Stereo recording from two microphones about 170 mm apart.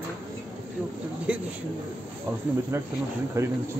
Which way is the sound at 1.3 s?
5° right (ahead or behind).